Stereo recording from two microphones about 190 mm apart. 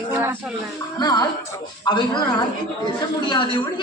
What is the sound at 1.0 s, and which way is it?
A man's voice, 20° left (ahead or behind).